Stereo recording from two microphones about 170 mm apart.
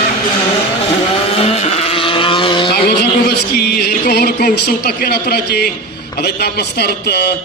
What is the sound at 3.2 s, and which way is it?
Speech, 70° left (ahead or behind).